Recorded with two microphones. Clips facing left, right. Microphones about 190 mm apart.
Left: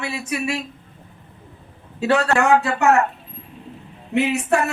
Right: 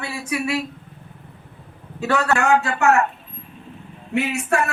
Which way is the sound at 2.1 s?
30° left (ahead or behind).